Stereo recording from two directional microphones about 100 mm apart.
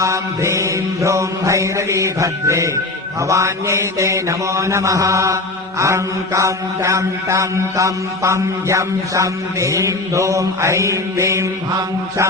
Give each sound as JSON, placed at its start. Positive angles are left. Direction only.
{"t": 0.0, "sound": "mantra", "side_deg": -30}